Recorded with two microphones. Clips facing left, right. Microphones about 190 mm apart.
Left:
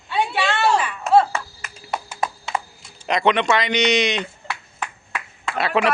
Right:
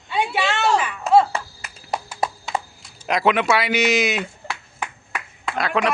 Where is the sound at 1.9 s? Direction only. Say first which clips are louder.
Right 1 dB; 35° right (ahead or behind).